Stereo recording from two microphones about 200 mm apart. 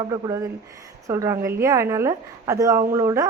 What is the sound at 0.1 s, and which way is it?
Speech, 15° right (ahead or behind).